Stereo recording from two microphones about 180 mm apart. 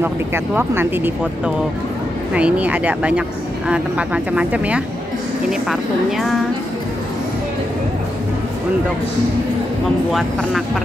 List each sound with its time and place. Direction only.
0.0 s speech: 10° right (ahead or behind)